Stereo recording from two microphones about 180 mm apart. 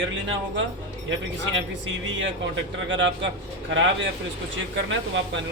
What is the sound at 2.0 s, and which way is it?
Speech, 90° right.